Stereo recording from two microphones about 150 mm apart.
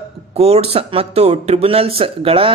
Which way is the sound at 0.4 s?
40° right (ahead or behind).